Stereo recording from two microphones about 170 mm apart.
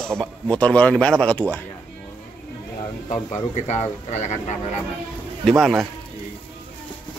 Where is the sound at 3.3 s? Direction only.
40° left (ahead or behind).